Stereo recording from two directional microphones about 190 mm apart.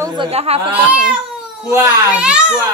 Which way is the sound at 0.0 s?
25° right (ahead or behind).